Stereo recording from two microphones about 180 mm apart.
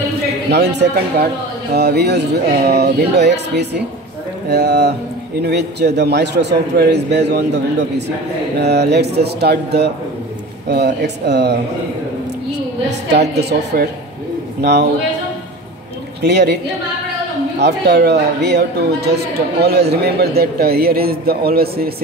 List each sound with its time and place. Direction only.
0.5 s a man's voice: 70° right (ahead or behind)
13.1 s a man's voice: 65° right (ahead or behind)
16.2 s a man's voice: 65° right (ahead or behind)
17.6 s speech: 70° right (ahead or behind)